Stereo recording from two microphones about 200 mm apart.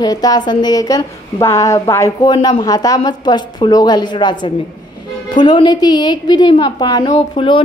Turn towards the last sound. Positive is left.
turn(degrees=25)  # may be behind; listen again after turning